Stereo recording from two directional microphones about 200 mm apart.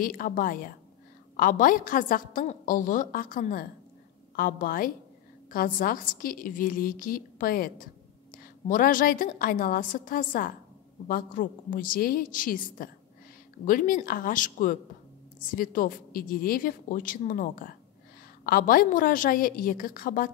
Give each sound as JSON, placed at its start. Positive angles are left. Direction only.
{"t": 0.0, "sound": "a woman's voice", "side_deg": 45}